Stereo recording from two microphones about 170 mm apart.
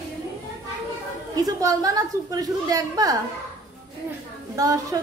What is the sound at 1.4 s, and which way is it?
A child's voice, 20° right (ahead or behind).